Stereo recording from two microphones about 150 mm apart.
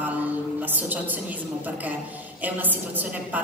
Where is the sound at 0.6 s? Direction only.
10° right (ahead or behind).